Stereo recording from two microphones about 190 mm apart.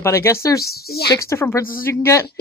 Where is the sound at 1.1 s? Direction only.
15° left (ahead or behind).